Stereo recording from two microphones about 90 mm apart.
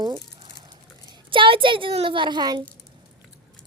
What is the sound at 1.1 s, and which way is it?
A child's voice, 70° right (ahead or behind).